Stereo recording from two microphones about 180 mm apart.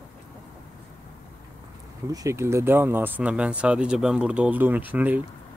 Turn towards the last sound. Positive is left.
turn(degrees=-10)  # may be behind; listen again after turning